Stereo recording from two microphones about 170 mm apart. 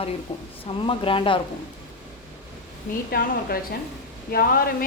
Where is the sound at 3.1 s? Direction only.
60° left (ahead or behind).